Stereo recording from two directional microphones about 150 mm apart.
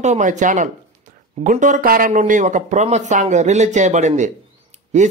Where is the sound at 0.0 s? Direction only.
50° right (ahead or behind).